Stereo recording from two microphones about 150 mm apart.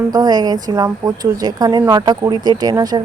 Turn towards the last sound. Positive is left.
turn(degrees=-25)  # may be behind; listen again after turning